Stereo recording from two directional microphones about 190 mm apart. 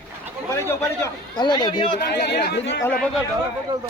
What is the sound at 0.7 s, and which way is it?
A man's voice, 20° left (ahead or behind).